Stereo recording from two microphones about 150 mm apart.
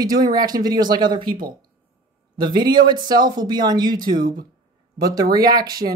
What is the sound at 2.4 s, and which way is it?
Speech, 30° right (ahead or behind).